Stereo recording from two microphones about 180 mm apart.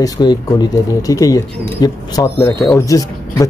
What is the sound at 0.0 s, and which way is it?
Speech, 25° left (ahead or behind).